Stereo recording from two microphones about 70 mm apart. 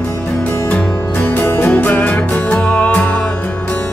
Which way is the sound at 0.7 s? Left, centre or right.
Left.